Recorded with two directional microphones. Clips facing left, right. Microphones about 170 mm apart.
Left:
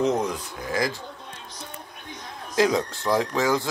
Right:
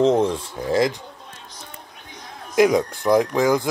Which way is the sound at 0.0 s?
30° right (ahead or behind).